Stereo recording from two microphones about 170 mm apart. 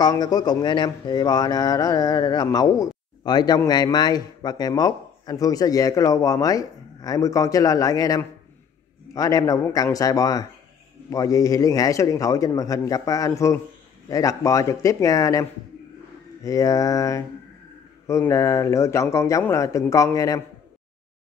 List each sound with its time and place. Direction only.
0.0 s speech: 25° left (ahead or behind)
16.4 s speech: 20° left (ahead or behind)